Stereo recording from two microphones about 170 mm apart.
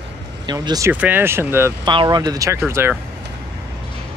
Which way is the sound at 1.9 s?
25° right (ahead or behind).